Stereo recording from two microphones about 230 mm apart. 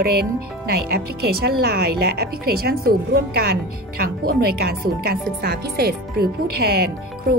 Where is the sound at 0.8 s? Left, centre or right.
Right.